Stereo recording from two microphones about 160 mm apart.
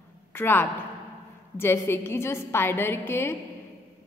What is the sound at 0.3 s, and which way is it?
A woman's voice, 15° left (ahead or behind).